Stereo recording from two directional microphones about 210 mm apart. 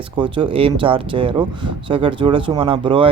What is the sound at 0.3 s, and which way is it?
Speech, 25° right (ahead or behind).